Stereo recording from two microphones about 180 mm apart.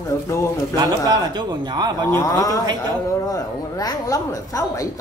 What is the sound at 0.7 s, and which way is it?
A man's voice, 20° right (ahead or behind).